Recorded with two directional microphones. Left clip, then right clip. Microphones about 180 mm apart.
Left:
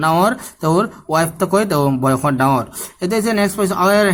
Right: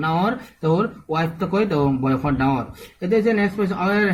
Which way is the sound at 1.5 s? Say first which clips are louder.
Left 3 dB; 50° left (ahead or behind).